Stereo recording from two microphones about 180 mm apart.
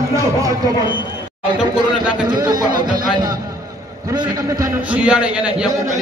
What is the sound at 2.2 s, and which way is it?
Speech, 25° right (ahead or behind).